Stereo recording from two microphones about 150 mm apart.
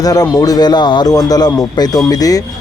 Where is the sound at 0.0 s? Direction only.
25° left (ahead or behind).